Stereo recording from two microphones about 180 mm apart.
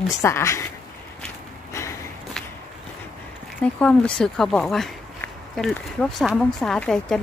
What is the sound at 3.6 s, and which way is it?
Speech, 5° left (ahead or behind).